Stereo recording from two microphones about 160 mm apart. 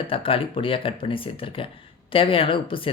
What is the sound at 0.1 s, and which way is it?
Speech, 35° left (ahead or behind).